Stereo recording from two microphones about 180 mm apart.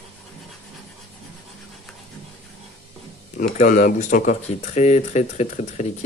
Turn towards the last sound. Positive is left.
turn(degrees=40)  # may be behind; listen again after turning